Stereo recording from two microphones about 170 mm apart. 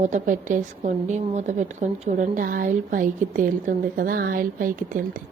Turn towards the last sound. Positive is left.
turn(degrees=-55)  # may be behind; listen again after turning